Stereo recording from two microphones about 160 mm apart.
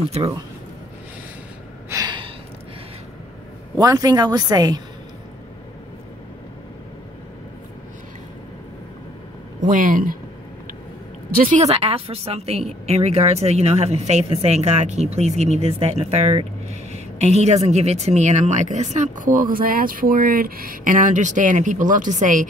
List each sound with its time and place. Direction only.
0.2 s speech: 40° right (ahead or behind)
1.9 s gasp: 25° right (ahead or behind)
3.7 s a woman's voice: 25° right (ahead or behind)
9.6 s speech: 55° right (ahead or behind)
11.4 s a woman's voice: 40° right (ahead or behind)